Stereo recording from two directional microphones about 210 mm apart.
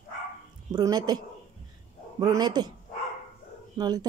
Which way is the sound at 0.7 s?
20° right (ahead or behind).